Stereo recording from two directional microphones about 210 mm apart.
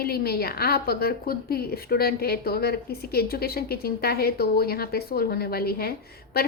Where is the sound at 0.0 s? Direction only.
50° left (ahead or behind).